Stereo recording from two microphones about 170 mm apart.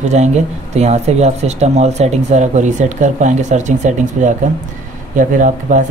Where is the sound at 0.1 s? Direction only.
40° right (ahead or behind).